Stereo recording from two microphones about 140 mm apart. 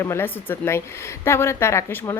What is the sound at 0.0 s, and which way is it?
Speech, 15° left (ahead or behind).